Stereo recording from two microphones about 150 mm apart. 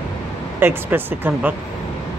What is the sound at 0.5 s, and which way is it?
Speech, 15° right (ahead or behind).